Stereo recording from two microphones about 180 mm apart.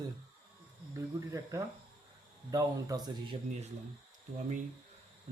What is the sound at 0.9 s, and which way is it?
Speech, 15° right (ahead or behind).